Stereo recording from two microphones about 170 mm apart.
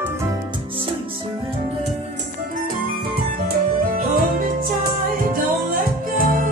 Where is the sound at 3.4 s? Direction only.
60° right (ahead or behind).